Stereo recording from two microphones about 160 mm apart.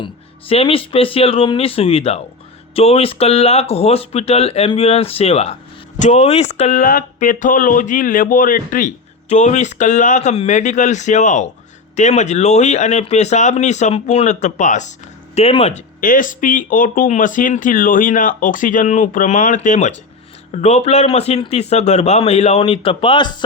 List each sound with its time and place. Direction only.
0.0 s speech: 35° left (ahead or behind)
6.8 s speech: 60° left (ahead or behind)
9.3 s speech: 45° left (ahead or behind)
15.4 s speech: 40° left (ahead or behind)
16.0 s speech: 55° left (ahead or behind); by 23.4 s 30° left (ahead or behind)